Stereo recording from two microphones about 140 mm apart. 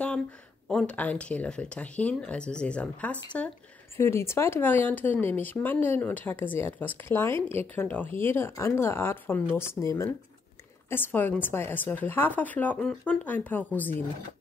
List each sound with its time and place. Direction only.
0.7 s speech: 5° left (ahead or behind)